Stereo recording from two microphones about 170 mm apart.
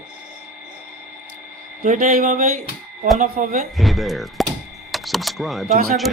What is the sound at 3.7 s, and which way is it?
Speech, centre (ahead or behind).